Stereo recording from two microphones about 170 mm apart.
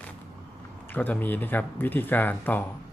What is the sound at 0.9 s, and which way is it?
Speech, 10° left (ahead or behind).